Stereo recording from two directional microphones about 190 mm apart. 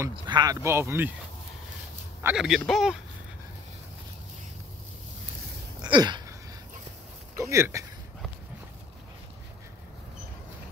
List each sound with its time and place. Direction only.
0.1 s speech: 20° right (ahead or behind)
2.2 s speech: 5° right (ahead or behind)
5.8 s a sound: 25° right (ahead or behind)
7.3 s speech: 15° right (ahead or behind)